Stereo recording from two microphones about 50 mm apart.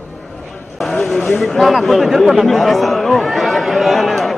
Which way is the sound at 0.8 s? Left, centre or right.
Centre.